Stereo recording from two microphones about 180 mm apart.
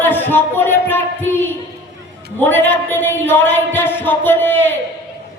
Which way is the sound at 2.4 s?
10° left (ahead or behind).